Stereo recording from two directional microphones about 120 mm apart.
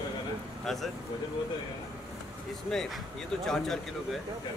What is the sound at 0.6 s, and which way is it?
Speech, centre (ahead or behind).